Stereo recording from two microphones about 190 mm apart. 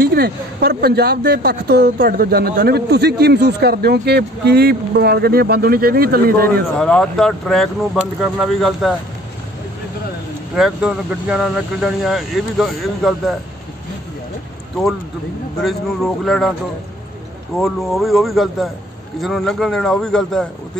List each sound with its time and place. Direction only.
0.0 s speech: 55° right (ahead or behind)
6.8 s speech: 5° left (ahead or behind)
10.5 s speech: 5° right (ahead or behind)
15.6 s speech: centre (ahead or behind)
17.6 s speech: centre (ahead or behind)